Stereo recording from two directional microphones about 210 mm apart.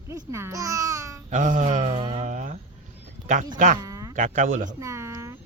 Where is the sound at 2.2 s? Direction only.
35° right (ahead or behind).